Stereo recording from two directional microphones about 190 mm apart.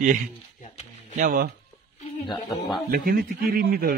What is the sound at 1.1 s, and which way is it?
Speech, 45° right (ahead or behind).